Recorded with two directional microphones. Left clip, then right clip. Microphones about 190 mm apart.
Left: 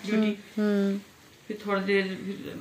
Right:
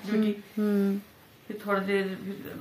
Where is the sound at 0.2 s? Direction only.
15° right (ahead or behind).